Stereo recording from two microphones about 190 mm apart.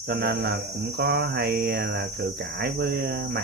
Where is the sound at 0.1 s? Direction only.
60° right (ahead or behind).